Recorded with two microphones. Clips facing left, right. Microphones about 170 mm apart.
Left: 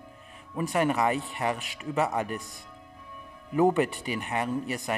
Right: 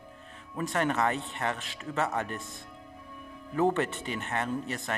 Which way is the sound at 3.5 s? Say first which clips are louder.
Left 4 dB; 15° left (ahead or behind).